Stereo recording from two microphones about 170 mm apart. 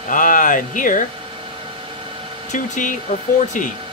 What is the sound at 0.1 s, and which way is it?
Speech, 50° left (ahead or behind).